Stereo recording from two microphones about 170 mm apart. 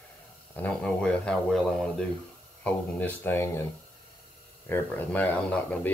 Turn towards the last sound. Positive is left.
turn(degrees=10)  # may be behind; listen again after turning